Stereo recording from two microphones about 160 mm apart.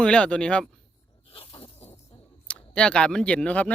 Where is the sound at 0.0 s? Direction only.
5° left (ahead or behind).